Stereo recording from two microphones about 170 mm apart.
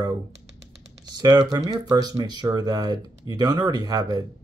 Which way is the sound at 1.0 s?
20° right (ahead or behind).